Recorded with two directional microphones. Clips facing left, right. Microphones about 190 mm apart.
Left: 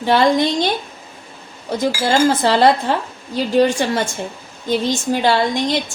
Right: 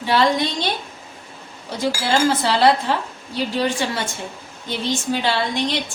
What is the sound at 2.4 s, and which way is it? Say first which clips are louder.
A woman's voice: left 3 dB; 50° left (ahead or behind).